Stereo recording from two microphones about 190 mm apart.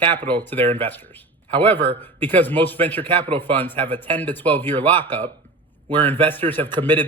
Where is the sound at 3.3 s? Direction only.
30° right (ahead or behind).